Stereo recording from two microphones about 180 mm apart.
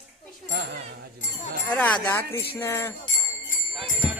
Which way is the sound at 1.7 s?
5° left (ahead or behind).